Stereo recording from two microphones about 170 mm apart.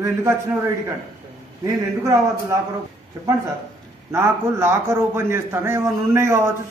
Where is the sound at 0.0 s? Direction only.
15° right (ahead or behind).